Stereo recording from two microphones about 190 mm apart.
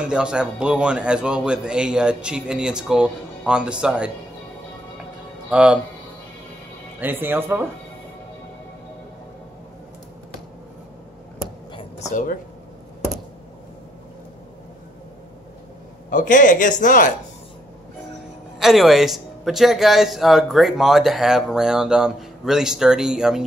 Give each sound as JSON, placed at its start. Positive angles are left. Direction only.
{"t": 0.0, "sound": "a man's voice", "side_deg": -5}
{"t": 5.5, "sound": "a man's voice", "side_deg": -5}
{"t": 7.0, "sound": "speech", "side_deg": -10}
{"t": 12.1, "sound": "speech", "side_deg": 45}
{"t": 16.1, "sound": "speech", "side_deg": 45}
{"t": 18.6, "sound": "a man's voice", "side_deg": 0}